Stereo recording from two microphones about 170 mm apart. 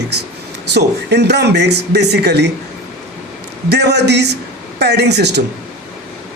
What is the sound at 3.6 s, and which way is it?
Speech, 80° right.